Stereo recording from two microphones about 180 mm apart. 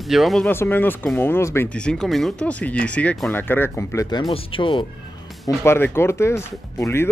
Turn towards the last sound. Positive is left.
turn(degrees=15)  # may be behind; listen again after turning